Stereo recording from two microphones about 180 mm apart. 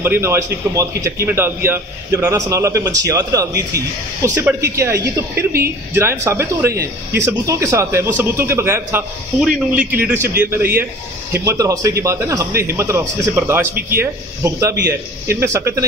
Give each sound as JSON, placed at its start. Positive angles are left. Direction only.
{"t": 0.0, "sound": "a man's voice", "side_deg": -15}
{"t": 5.3, "sound": "a woman's voice", "side_deg": -55}
{"t": 5.9, "sound": "a man's voice", "side_deg": -15}